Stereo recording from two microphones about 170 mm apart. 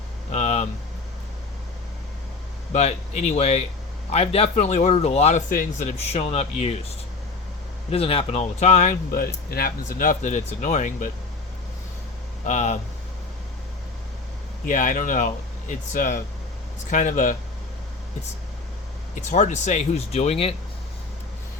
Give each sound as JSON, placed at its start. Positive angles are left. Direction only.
{"t": 0.3, "sound": "a sound", "side_deg": 40}
{"t": 2.7, "sound": "speech", "side_deg": 40}
{"t": 7.9, "sound": "speech", "side_deg": 35}
{"t": 12.5, "sound": "speech", "side_deg": 45}
{"t": 14.7, "sound": "speech", "side_deg": 50}
{"t": 19.1, "sound": "speech", "side_deg": 45}